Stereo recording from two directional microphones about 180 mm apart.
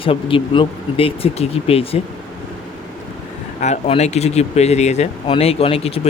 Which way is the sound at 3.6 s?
40° left (ahead or behind).